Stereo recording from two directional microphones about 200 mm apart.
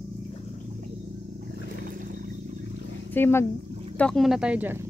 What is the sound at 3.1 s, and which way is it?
Speech, 10° left (ahead or behind).